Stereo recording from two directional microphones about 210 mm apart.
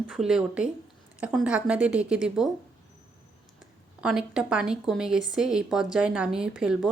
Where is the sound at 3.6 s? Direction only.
5° right (ahead or behind).